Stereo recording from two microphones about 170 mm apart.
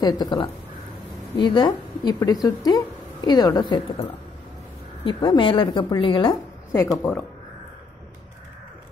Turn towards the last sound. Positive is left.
turn(degrees=15)  # may be behind; listen again after turning